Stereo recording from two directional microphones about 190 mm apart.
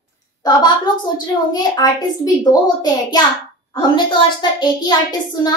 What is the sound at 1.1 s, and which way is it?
A child's voice, 20° left (ahead or behind).